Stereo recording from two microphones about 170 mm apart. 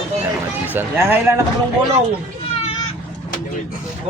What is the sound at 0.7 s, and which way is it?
Speech, 15° right (ahead or behind).